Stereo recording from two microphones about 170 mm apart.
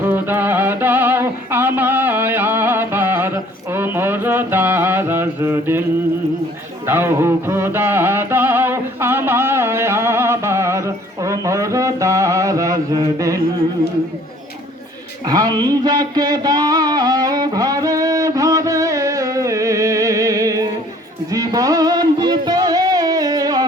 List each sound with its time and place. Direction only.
0.0 s music: 10° right (ahead or behind)
6.8 s music: 15° right (ahead or behind)
15.3 s speech: 20° right (ahead or behind)
15.6 s music: 25° right (ahead or behind)